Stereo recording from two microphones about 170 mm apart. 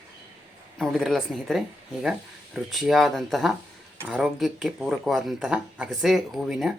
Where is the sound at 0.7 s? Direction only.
Centre (ahead or behind).